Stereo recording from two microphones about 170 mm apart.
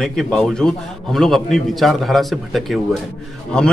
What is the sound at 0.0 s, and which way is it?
A man's voice, 5° left (ahead or behind).